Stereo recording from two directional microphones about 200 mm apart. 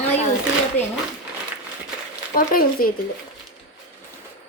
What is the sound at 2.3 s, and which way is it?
Speech, 45° left (ahead or behind).